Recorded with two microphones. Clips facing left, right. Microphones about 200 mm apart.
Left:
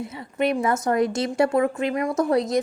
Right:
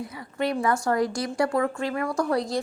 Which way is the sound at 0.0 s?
20° left (ahead or behind).